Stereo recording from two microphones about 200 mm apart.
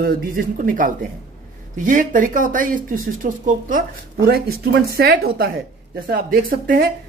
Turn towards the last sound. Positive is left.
turn(degrees=-45)  # may be behind; listen again after turning